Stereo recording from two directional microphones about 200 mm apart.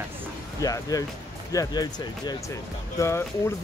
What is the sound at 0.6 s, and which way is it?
Speech, 20° left (ahead or behind).